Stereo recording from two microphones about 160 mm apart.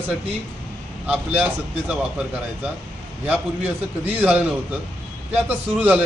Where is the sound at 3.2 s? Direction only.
10° right (ahead or behind).